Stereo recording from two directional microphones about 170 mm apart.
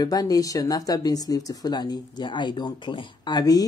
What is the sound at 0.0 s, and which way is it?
Speech, 20° left (ahead or behind).